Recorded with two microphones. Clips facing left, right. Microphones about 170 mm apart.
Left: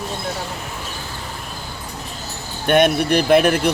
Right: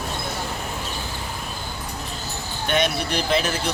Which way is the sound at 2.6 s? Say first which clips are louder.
Left 8 dB; 55° left (ahead or behind).